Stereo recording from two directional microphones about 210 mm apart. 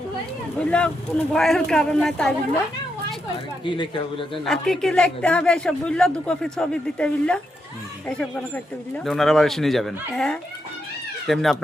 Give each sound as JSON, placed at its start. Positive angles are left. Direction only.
{"t": 0.6, "sound": "speech", "side_deg": 5}
{"t": 3.6, "sound": "speech", "side_deg": 25}
{"t": 4.4, "sound": "speech", "side_deg": 0}